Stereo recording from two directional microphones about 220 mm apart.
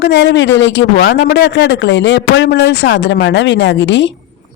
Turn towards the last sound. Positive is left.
turn(degrees=55)  # may be behind; listen again after turning